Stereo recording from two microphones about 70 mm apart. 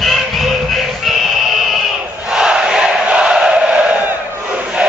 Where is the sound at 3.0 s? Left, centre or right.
Centre.